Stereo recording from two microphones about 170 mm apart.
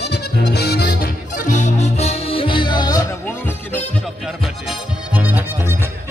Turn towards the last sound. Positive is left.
turn(degrees=-10)  # may be behind; listen again after turning